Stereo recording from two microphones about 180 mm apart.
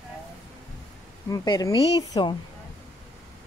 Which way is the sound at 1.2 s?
20° left (ahead or behind).